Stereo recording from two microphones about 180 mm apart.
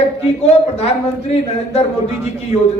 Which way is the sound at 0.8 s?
35° left (ahead or behind).